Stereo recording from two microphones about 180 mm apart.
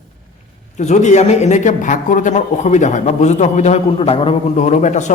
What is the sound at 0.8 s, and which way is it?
Speech, 40° left (ahead or behind).